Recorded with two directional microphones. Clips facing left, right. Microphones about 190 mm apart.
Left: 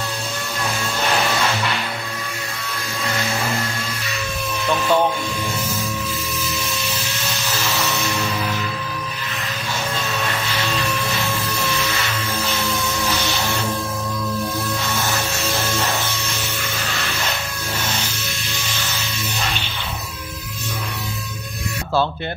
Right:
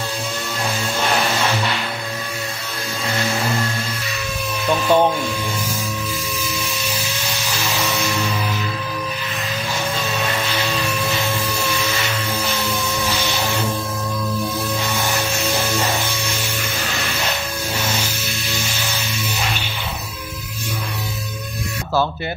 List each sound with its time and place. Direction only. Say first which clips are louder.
4.6 s music: right 2 dB; 15° right (ahead or behind)